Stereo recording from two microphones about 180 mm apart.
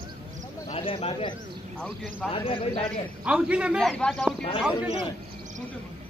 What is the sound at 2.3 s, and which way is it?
Speech, 30° left (ahead or behind).